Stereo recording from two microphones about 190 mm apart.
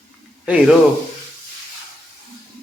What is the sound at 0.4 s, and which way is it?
Speech, 5° right (ahead or behind).